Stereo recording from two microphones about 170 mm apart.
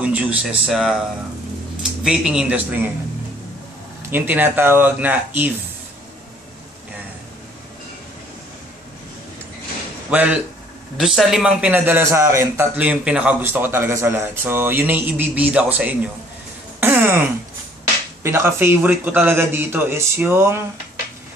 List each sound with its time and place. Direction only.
0.0 s speech: 5° right (ahead or behind)
2.0 s a man's voice: 5° right (ahead or behind)
4.1 s a man's voice: 10° right (ahead or behind)
10.0 s a man's voice: 10° right (ahead or behind)
16.8 s throat clearing: 10° right (ahead or behind)
18.2 s a man's voice: 15° right (ahead or behind)